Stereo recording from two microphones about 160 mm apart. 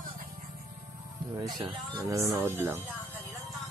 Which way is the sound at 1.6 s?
25° right (ahead or behind).